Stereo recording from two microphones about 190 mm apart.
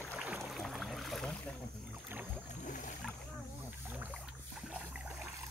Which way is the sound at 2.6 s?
40° left (ahead or behind).